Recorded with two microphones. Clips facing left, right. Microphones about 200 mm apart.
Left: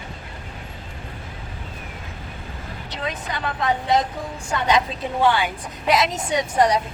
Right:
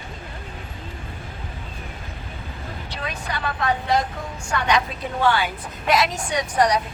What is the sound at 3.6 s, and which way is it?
A woman's voice, 20° left (ahead or behind).